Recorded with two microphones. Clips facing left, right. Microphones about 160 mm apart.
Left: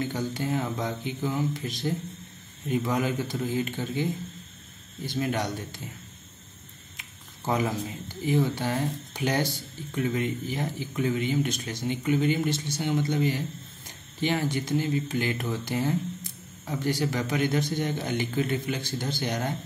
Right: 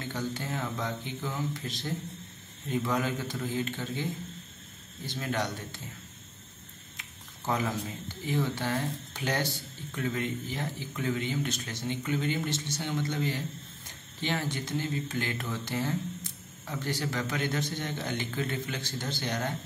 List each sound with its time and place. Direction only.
0.0 s speech: 15° left (ahead or behind)
7.4 s speech: 15° left (ahead or behind)